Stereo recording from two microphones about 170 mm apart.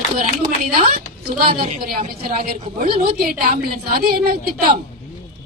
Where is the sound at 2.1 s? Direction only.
60° right (ahead or behind).